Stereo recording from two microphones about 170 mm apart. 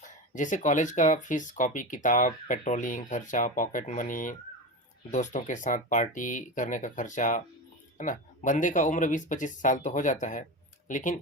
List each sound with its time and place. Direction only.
0.0 s speech: 50° left (ahead or behind)